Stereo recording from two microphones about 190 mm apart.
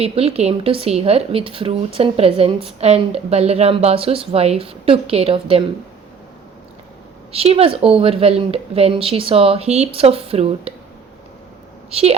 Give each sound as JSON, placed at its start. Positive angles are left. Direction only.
{"t": 0.0, "sound": "a woman's voice", "side_deg": -35}
{"t": 7.3, "sound": "a woman's voice", "side_deg": -30}
{"t": 11.9, "sound": "a woman's voice", "side_deg": -30}